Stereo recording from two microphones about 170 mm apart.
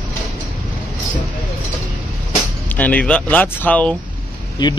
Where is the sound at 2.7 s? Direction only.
10° left (ahead or behind).